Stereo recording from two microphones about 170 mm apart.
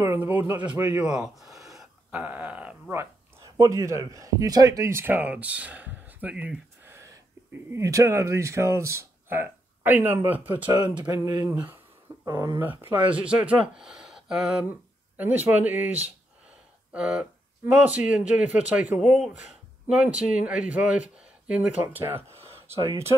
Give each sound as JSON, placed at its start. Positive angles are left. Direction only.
{"t": 0.0, "sound": "speech", "side_deg": -10}
{"t": 12.3, "sound": "speech", "side_deg": -20}